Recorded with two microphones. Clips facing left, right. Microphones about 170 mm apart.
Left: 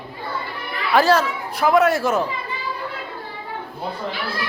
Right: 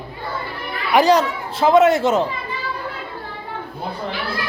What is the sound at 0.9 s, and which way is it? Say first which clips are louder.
Speech: right 2 dB; 15° right (ahead or behind).